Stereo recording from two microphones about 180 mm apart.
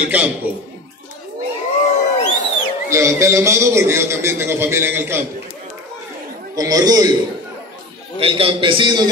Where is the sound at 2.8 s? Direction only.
15° right (ahead or behind).